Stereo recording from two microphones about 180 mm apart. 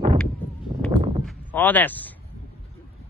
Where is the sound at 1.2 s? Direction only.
10° left (ahead or behind).